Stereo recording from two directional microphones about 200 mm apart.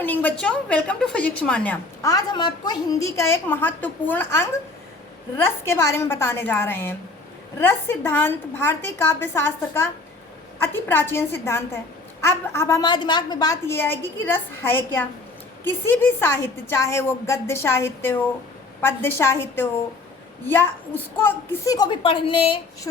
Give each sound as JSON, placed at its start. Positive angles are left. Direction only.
{"t": 0.0, "sound": "a woman's voice", "side_deg": 10}